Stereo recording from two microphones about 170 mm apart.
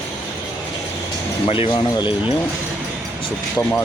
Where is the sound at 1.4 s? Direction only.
35° left (ahead or behind).